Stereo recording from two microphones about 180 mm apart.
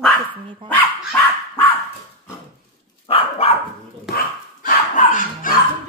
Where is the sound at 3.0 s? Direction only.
30° left (ahead or behind).